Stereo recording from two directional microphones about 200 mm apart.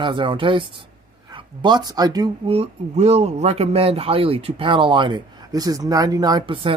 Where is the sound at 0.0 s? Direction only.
25° right (ahead or behind).